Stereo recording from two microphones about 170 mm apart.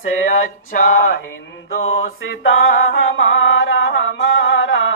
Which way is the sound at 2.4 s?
90° left.